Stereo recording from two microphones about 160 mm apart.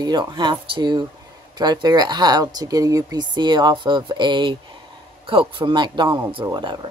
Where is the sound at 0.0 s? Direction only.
25° right (ahead or behind).